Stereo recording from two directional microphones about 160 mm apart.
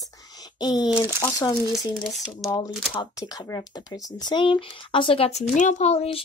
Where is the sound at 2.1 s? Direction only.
Centre (ahead or behind).